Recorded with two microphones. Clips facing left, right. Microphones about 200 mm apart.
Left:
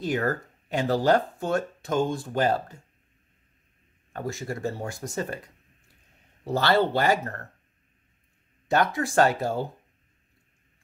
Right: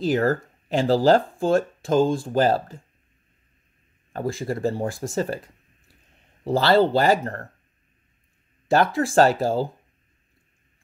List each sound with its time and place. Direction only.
0.1 s speech: 35° right (ahead or behind)
4.1 s speech: 30° right (ahead or behind)
6.4 s speech: 30° right (ahead or behind)
8.9 s speech: 30° right (ahead or behind)